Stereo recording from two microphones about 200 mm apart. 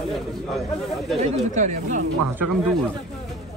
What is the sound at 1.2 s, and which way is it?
Speech, 35° right (ahead or behind).